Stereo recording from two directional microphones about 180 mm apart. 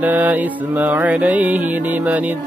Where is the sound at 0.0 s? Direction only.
10° right (ahead or behind).